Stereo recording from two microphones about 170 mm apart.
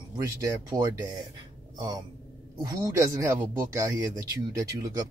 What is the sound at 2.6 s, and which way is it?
Speech, 20° right (ahead or behind).